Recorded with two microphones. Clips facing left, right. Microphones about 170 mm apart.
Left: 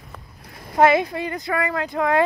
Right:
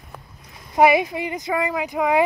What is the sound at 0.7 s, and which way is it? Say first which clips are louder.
Speech: even; 15° right (ahead or behind).